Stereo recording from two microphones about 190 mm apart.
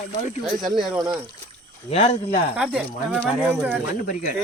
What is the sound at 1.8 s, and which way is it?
Speech, 30° left (ahead or behind).